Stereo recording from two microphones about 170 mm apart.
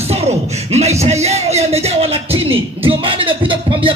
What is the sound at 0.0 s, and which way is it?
Speech, 35° right (ahead or behind).